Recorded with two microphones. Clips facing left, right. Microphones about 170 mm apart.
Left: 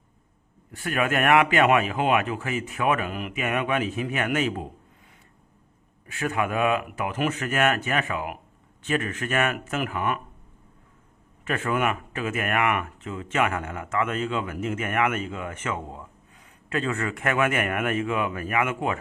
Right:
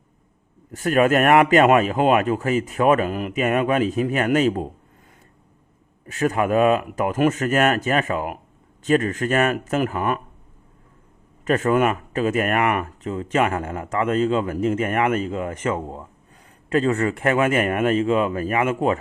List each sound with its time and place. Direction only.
0.7 s speech: 40° right (ahead or behind)
6.1 s speech: 40° right (ahead or behind)
11.4 s speech: 40° right (ahead or behind)